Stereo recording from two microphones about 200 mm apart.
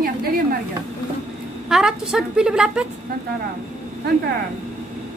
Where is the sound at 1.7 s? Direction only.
5° right (ahead or behind).